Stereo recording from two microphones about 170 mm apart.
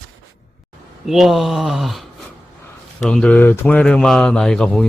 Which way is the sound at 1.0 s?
Centre (ahead or behind).